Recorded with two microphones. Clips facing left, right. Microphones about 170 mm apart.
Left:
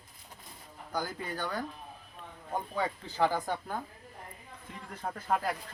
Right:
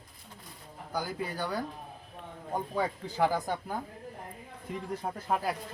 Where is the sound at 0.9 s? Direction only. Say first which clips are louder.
Right 1 dB; 10° right (ahead or behind).